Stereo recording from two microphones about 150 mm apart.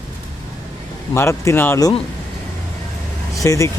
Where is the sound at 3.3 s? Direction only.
20° left (ahead or behind).